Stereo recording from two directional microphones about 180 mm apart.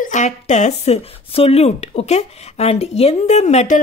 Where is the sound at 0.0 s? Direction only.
40° left (ahead or behind).